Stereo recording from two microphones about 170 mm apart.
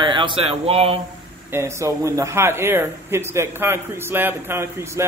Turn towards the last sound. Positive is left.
turn(degrees=-15)  # may be behind; listen again after turning